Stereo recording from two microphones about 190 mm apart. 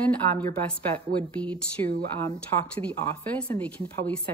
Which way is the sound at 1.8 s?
35° right (ahead or behind).